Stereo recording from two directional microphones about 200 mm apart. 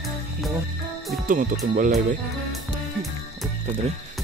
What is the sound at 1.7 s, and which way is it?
Speech, 40° right (ahead or behind).